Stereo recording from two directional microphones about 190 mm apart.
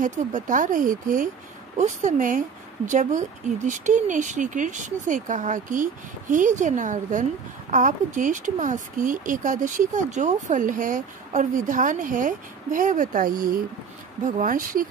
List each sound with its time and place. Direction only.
0.0 s a woman's voice: 45° right (ahead or behind)